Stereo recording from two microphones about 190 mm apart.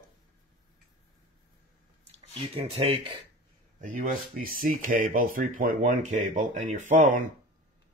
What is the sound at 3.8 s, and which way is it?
Speech, 45° right (ahead or behind).